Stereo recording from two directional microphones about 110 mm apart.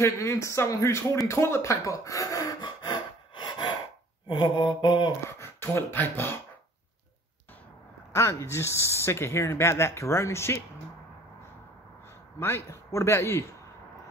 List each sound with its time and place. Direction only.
0.0 s speech: 25° left (ahead or behind)
3.3 s sawing: 40° left (ahead or behind)
4.3 s mantra: 45° left (ahead or behind)
5.4 s speech: 25° left (ahead or behind)
8.1 s speech: 25° left (ahead or behind)
12.4 s speech: 25° left (ahead or behind)